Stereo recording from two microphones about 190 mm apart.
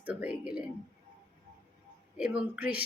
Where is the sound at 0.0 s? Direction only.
5° right (ahead or behind).